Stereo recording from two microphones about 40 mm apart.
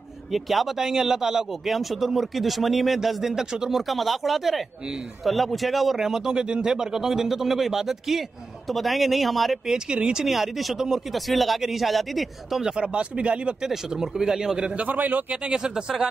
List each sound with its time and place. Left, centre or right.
0.3 s speech: centre
0.7 s speech: centre
3.8 s speech: centre
5.9 s speech: centre
9.7 s speech: right
10.2 s speech: centre
12.6 s speech: right
13.6 s speech: centre
14.8 s a man's voice: right
15.4 s speech: centre